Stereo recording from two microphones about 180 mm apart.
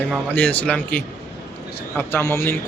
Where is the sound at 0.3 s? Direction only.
5° left (ahead or behind).